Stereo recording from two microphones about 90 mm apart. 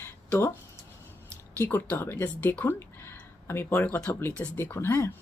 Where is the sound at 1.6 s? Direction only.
20° left (ahead or behind).